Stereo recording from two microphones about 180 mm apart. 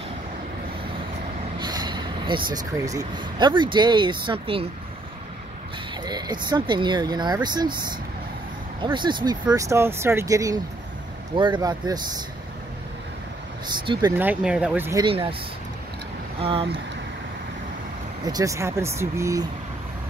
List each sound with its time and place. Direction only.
1.6 s speech: 25° right (ahead or behind)
6.0 s speech: 20° right (ahead or behind)
13.7 s speech: 25° right (ahead or behind)
14.1 s speech: 10° right (ahead or behind)
14.9 s speech: 25° right (ahead or behind)
16.3 s speech: 30° right (ahead or behind)
18.2 s speech: 20° right (ahead or behind)